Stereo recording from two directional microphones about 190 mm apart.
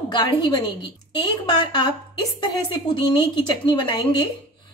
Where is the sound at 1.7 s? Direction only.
25° left (ahead or behind).